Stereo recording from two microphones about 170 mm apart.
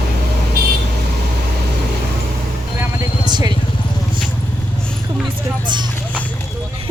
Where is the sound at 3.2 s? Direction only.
25° right (ahead or behind).